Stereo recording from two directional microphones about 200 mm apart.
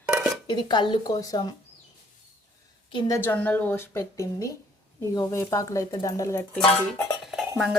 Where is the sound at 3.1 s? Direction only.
10° left (ahead or behind).